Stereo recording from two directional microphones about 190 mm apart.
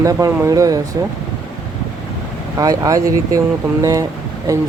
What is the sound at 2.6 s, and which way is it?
Speech, 20° right (ahead or behind).